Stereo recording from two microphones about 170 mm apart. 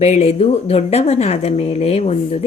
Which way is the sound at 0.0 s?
40° left (ahead or behind).